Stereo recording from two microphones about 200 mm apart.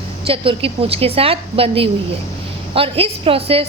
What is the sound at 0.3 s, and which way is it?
A woman's voice, 30° right (ahead or behind).